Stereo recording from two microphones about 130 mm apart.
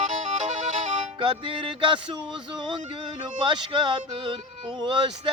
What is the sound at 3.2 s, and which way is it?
Music, 35° right (ahead or behind).